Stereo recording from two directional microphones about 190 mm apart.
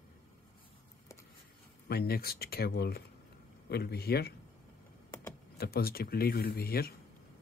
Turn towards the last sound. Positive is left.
turn(degrees=55)  # may be behind; listen again after turning